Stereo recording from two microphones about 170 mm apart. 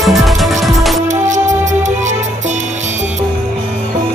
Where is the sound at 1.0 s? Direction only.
45° right (ahead or behind).